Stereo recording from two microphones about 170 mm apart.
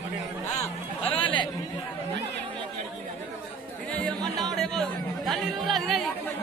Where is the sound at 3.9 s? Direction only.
5° left (ahead or behind).